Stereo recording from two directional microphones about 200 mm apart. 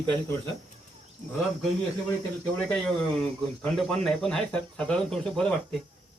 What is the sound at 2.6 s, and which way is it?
Speech, 5° left (ahead or behind).